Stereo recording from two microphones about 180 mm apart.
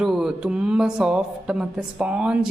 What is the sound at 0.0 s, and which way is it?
Speech, centre (ahead or behind).